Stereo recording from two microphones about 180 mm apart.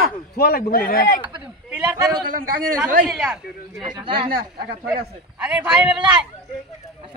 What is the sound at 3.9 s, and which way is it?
Speech, 30° right (ahead or behind).